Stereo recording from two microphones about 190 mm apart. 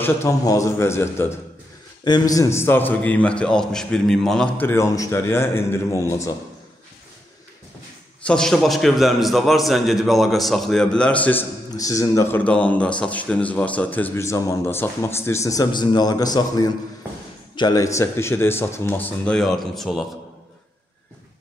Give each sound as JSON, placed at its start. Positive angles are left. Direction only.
{"t": 0.0, "sound": "a man's voice", "side_deg": 15}
{"t": 8.3, "sound": "a man's voice", "side_deg": 0}